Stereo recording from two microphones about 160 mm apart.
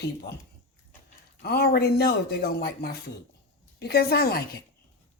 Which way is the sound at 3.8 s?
85° left.